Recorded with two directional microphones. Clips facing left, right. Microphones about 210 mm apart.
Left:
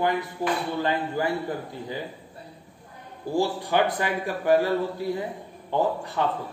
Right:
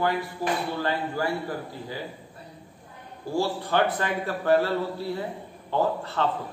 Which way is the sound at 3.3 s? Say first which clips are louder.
Left 1 dB; 15° left (ahead or behind).